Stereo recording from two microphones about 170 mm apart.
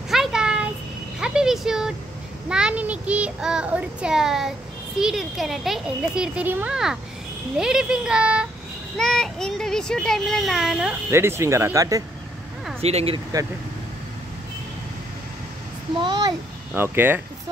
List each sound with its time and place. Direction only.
0.1 s a sound: 5° right (ahead or behind)
2.5 s a child's voice: 5° right (ahead or behind)
11.1 s speech: 15° right (ahead or behind)
12.8 s speech: 35° right (ahead or behind)
16.0 s a child's voice: 25° right (ahead or behind)
16.7 s speech: 15° right (ahead or behind)